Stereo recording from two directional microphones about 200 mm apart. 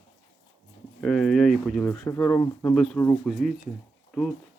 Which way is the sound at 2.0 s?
15° left (ahead or behind).